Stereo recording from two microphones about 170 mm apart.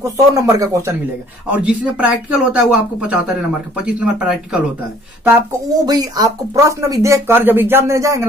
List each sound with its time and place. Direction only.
0.0 s speech: 20° right (ahead or behind)
1.5 s speech: 5° right (ahead or behind)
5.9 s speech: 20° right (ahead or behind)